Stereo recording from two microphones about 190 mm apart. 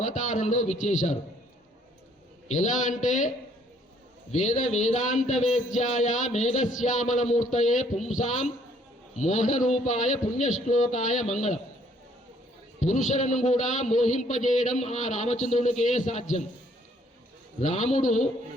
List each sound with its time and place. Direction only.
0.0 s speech: 40° left (ahead or behind)
2.5 s speech: 40° left (ahead or behind)
12.8 s speech: 40° left (ahead or behind)
17.6 s speech: 40° left (ahead or behind)